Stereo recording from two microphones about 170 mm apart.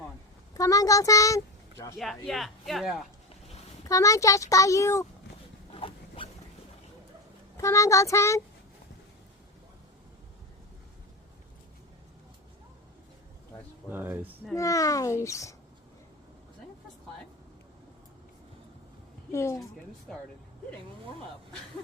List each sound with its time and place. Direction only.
0.5 s a child's voice: 20° left (ahead or behind)
2.0 s speech: centre (ahead or behind)
3.8 s a child's voice: 20° left (ahead or behind)
5.7 s zipper: 30° left (ahead or behind)
7.5 s speech: 15° left (ahead or behind)
13.9 s speech: 10° right (ahead or behind)
14.5 s speech: 20° left (ahead or behind)
19.3 s a woman's voice: 15° left (ahead or behind)